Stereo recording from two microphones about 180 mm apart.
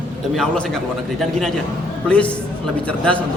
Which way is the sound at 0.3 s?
5° left (ahead or behind).